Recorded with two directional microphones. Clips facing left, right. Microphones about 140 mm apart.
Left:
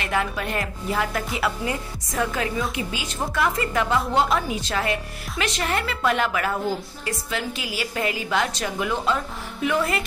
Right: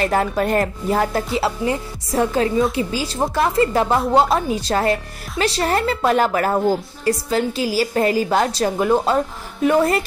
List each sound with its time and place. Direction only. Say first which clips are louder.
0.0 s a woman's voice: right 7 dB; 40° right (ahead or behind)